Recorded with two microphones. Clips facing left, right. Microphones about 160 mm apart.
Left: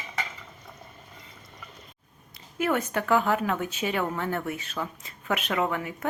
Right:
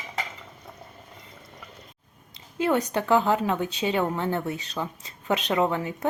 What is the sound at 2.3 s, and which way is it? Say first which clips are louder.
A woman's voice: right 3 dB; 20° right (ahead or behind).